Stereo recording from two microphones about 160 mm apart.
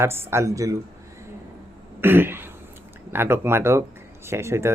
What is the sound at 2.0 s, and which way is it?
Throat clearing, 15° right (ahead or behind).